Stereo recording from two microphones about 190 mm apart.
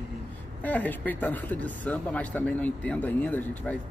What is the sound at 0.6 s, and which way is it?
Speech, 10° left (ahead or behind).